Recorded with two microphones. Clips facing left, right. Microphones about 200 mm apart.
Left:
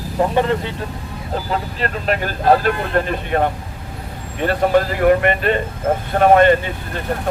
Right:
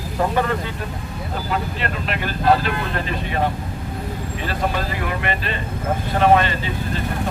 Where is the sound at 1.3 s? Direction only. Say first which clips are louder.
Left 3 dB; 35° left (ahead or behind).